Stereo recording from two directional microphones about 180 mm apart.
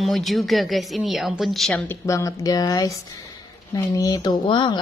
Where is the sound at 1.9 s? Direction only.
15° left (ahead or behind).